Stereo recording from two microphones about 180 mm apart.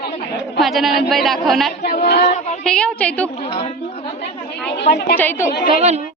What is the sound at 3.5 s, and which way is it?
Speech, 30° left (ahead or behind).